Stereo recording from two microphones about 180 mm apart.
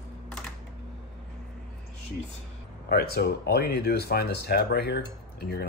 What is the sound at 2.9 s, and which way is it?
Speech, 60° left (ahead or behind).